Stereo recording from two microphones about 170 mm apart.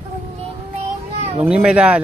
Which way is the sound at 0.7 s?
40° right (ahead or behind).